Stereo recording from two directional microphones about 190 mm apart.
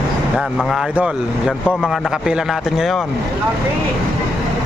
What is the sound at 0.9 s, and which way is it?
Speech, 5° right (ahead or behind).